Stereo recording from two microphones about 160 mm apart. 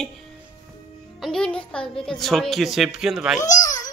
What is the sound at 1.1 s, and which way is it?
Music, centre (ahead or behind).